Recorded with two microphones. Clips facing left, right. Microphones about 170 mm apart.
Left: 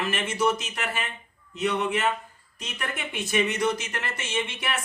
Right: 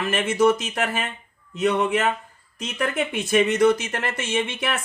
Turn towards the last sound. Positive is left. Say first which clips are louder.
# right 5 dB
turn(degrees=-50)  # may be behind; listen again after turning